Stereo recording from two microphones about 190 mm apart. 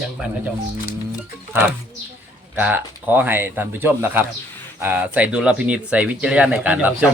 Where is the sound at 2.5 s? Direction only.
10° right (ahead or behind).